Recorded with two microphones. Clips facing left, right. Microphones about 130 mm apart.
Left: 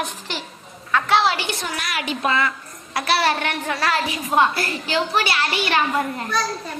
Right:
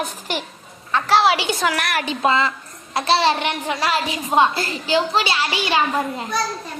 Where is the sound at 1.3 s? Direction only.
85° right.